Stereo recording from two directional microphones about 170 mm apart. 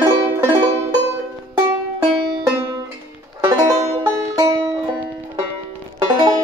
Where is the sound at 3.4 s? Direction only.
15° right (ahead or behind).